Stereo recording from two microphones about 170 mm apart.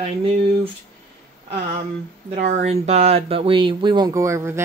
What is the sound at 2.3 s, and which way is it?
Speech, 40° right (ahead or behind).